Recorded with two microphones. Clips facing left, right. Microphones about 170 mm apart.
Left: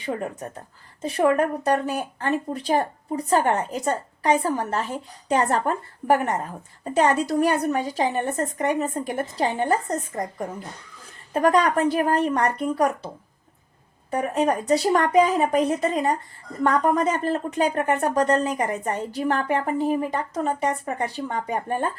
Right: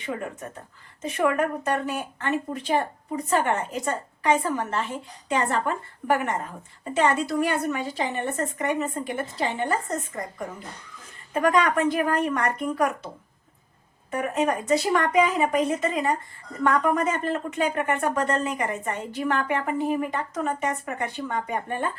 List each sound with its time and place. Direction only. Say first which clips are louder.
1.0 s speech: left 3 dB; 35° left (ahead or behind)
11.3 s speech: left 2 dB; 35° left (ahead or behind)
14.1 s speech: left 2 dB; 35° left (ahead or behind)